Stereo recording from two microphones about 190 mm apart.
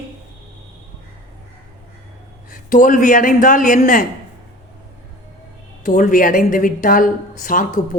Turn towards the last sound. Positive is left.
turn(degrees=45)  # may be behind; listen again after turning